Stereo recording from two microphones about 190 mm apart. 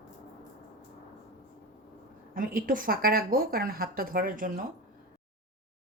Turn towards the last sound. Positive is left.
turn(degrees=-45)  # may be behind; listen again after turning